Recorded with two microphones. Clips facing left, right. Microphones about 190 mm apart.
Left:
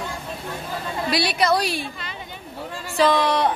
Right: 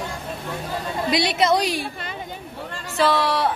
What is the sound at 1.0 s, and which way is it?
Speech, 20° right (ahead or behind).